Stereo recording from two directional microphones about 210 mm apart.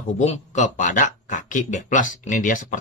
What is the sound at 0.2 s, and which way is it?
Speech, 35° left (ahead or behind).